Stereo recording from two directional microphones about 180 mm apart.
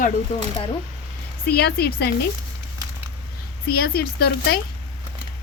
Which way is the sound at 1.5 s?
60° left (ahead or behind).